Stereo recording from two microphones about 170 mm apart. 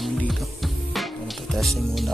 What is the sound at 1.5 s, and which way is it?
Speech, centre (ahead or behind).